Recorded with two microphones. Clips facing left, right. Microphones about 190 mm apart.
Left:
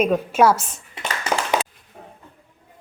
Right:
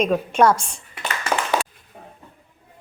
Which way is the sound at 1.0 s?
30° left (ahead or behind).